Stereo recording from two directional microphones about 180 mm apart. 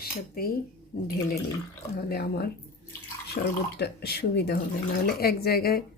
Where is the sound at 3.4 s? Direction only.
55° left (ahead or behind).